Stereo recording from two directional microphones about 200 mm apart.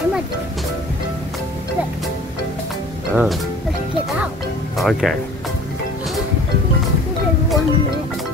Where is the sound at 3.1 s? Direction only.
Centre (ahead or behind).